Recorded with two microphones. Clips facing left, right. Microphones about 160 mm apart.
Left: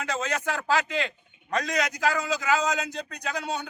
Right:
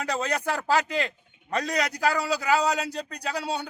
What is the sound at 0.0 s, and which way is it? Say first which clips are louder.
A man's voice: right 2 dB; 35° right (ahead or behind).